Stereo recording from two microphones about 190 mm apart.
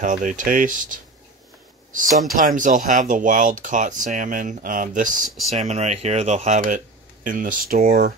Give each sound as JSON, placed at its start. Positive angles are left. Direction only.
{"t": 0.0, "sound": "speech", "side_deg": -45}
{"t": 2.3, "sound": "speech", "side_deg": -45}